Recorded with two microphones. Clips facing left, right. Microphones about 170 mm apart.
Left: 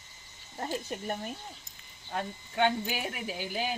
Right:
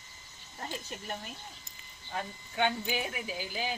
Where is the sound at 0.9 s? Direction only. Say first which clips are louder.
Left 6 dB; 50° left (ahead or behind).